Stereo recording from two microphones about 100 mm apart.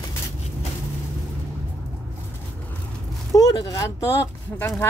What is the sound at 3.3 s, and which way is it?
Speech, 40° left (ahead or behind).